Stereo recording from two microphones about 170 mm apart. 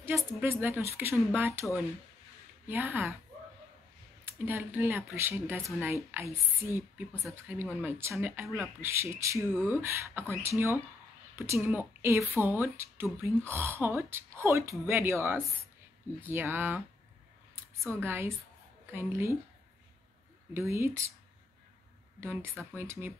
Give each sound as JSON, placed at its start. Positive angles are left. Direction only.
{"t": 0.4, "sound": "speech", "side_deg": -15}
{"t": 4.2, "sound": "speech", "side_deg": -10}
{"t": 17.8, "sound": "speech", "side_deg": -15}
{"t": 20.5, "sound": "speech", "side_deg": -15}
{"t": 22.2, "sound": "speech", "side_deg": -15}